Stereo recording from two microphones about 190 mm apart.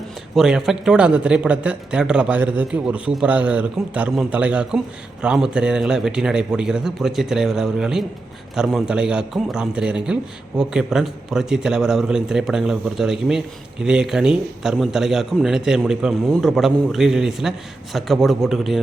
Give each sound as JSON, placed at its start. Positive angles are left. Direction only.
{"t": 0.3, "sound": "speech", "side_deg": 0}